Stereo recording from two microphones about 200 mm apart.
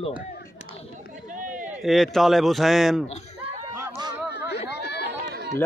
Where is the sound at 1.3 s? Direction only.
40° right (ahead or behind).